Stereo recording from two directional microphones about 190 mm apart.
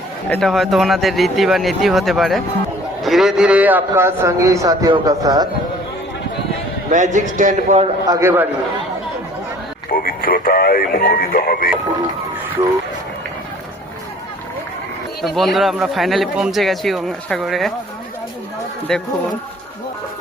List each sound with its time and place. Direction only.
0.3 s a man's voice: centre (ahead or behind); by 5.5 s 20° right (ahead or behind)
6.9 s a man's voice: 40° right (ahead or behind)
8.0 s a man's voice: 15° right (ahead or behind)
9.9 s speech: 50° left (ahead or behind)
15.2 s speech: centre (ahead or behind)
18.9 s speech: 5° left (ahead or behind)